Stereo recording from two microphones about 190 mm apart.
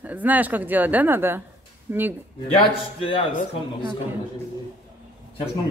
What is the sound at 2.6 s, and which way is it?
Speech, 30° left (ahead or behind).